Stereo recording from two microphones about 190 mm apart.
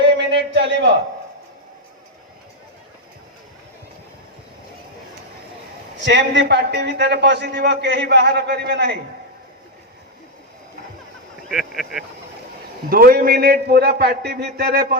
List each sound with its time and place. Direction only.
0.2 s a sound: 65° right (ahead or behind)
6.1 s a man's voice: 70° right (ahead or behind)
11.5 s speech: centre (ahead or behind)
12.9 s a man's voice: 50° right (ahead or behind)